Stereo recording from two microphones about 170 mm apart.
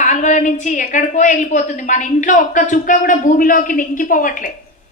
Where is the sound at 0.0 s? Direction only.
45° left (ahead or behind).